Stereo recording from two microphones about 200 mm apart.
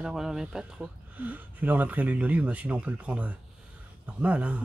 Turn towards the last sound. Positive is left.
turn(degrees=-5)  # may be behind; listen again after turning